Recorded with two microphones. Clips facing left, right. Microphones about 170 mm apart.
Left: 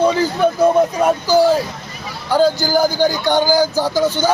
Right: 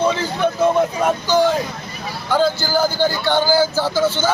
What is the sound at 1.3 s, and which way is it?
Speech, 5° left (ahead or behind).